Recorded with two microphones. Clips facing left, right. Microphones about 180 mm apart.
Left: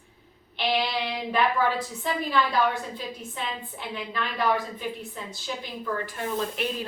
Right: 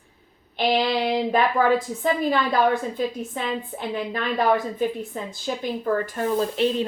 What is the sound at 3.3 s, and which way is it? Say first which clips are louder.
A woman's voice: right 6 dB; 45° right (ahead or behind).